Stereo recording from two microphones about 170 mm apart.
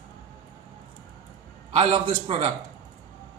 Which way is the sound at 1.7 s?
35° right (ahead or behind).